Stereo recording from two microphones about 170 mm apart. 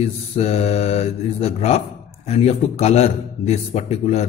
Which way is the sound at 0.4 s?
40° left (ahead or behind).